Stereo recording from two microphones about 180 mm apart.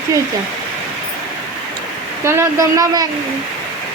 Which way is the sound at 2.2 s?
15° right (ahead or behind).